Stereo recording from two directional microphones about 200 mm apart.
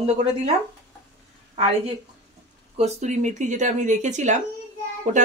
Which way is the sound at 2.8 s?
35° right (ahead or behind).